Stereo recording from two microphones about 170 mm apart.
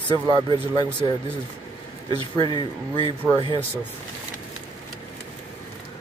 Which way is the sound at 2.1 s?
25° left (ahead or behind).